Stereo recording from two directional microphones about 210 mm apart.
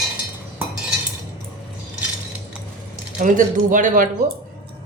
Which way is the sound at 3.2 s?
40° right (ahead or behind).